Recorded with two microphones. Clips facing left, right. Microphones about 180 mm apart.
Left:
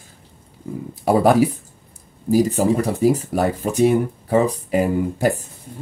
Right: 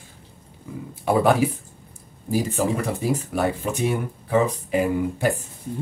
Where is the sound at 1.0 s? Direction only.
40° left (ahead or behind).